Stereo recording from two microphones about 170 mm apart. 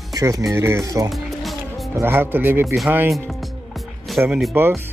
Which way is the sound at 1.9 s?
15° right (ahead or behind).